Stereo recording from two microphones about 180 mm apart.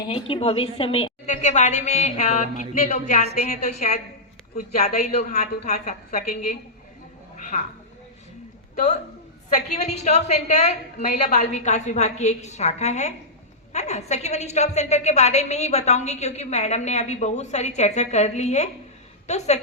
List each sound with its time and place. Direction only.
0.1 s a woman's voice: 30° left (ahead or behind)
9.7 s a woman's voice: 40° left (ahead or behind)